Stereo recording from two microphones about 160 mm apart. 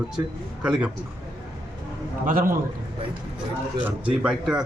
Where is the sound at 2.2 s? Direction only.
60° right (ahead or behind).